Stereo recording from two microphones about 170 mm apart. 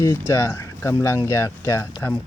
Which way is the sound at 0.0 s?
15° left (ahead or behind).